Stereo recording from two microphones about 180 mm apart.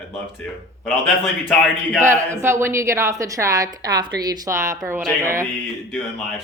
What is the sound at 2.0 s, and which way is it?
A woman's voice, 15° right (ahead or behind).